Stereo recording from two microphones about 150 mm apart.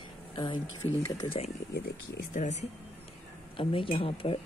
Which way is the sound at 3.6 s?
35° left (ahead or behind).